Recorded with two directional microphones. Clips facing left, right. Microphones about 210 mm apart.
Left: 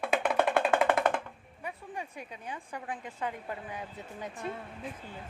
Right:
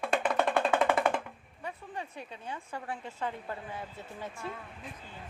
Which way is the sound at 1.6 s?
10° left (ahead or behind).